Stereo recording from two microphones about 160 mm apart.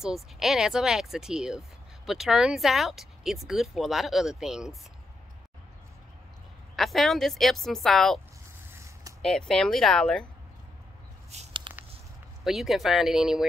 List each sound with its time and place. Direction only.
0.0 s speech: centre (ahead or behind)
6.8 s speech: centre (ahead or behind)
8.7 s zipper: 20° right (ahead or behind)
9.2 s speech: 5° left (ahead or behind)
11.2 s a sound: 45° right (ahead or behind)
12.4 s speech: centre (ahead or behind)